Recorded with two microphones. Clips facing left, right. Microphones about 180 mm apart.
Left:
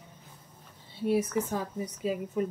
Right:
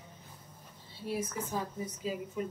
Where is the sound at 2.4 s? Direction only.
50° left (ahead or behind).